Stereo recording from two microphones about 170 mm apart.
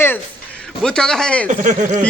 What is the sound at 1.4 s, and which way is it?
Speech, 50° right (ahead or behind).